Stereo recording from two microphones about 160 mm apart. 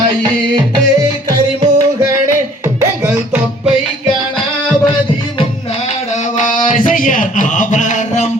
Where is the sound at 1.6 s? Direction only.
25° right (ahead or behind).